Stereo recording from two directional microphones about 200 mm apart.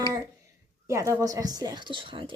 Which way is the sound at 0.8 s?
15° right (ahead or behind).